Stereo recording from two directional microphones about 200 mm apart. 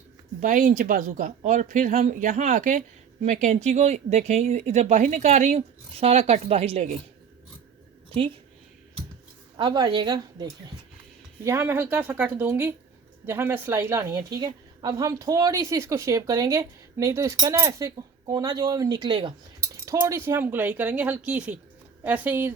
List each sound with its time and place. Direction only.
0.3 s speech: 40° right (ahead or behind)
9.6 s a woman's voice: 20° right (ahead or behind)
11.4 s a woman's voice: 10° right (ahead or behind)